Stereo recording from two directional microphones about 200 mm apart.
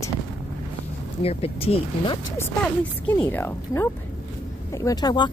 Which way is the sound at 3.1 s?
10° left (ahead or behind).